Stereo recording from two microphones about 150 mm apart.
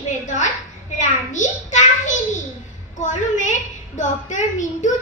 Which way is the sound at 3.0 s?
55° left (ahead or behind).